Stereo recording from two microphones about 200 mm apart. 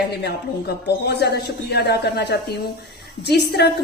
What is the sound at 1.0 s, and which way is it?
A woman's voice, 55° left (ahead or behind).